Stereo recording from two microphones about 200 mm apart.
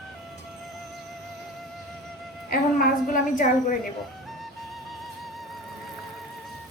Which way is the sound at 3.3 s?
40° left (ahead or behind).